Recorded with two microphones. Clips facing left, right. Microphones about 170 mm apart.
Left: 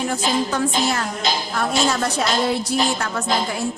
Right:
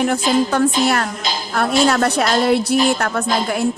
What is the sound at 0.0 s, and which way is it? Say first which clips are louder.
A woman's voice: right 5 dB; 60° right (ahead or behind).